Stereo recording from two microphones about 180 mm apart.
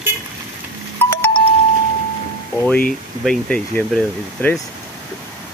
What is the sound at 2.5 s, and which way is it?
Speech, 10° left (ahead or behind).